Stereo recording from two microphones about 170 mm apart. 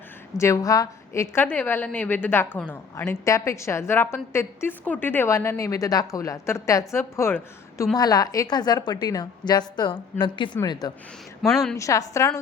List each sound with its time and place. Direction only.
0.3 s a woman's voice: 15° left (ahead or behind)
11.5 s a woman's voice: centre (ahead or behind)
11.8 s a woman's voice: 20° left (ahead or behind)